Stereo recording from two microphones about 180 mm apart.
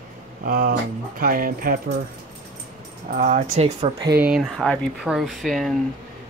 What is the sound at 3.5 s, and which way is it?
Speech, 35° right (ahead or behind).